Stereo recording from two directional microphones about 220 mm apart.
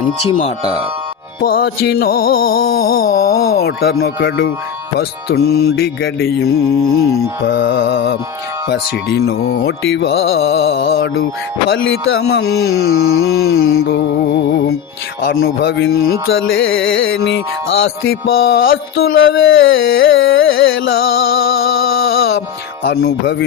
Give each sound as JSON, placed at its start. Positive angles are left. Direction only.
{"t": 0.3, "sound": "speech", "side_deg": 30}
{"t": 1.4, "sound": "music", "side_deg": 45}
{"t": 7.4, "sound": "music", "side_deg": 50}
{"t": 10.7, "sound": "carnatic music", "side_deg": 45}
{"t": 12.8, "sound": "mantra", "side_deg": 70}
{"t": 13.8, "sound": "music", "side_deg": 55}
{"t": 16.2, "sound": "carnatic music", "side_deg": 60}
{"t": 18.3, "sound": "music", "side_deg": 45}
{"t": 18.7, "sound": "carnatic music", "side_deg": 65}
{"t": 21.0, "sound": "music", "side_deg": 45}
{"t": 21.9, "sound": "music", "side_deg": 65}
{"t": 22.4, "sound": "speech", "side_deg": 60}